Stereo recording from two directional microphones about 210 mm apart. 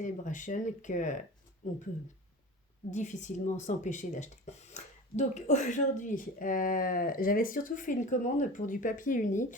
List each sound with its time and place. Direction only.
0.0 s speech: 35° left (ahead or behind)
2.9 s speech: 35° left (ahead or behind)